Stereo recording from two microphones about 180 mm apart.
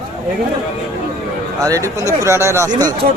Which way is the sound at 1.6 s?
20° right (ahead or behind).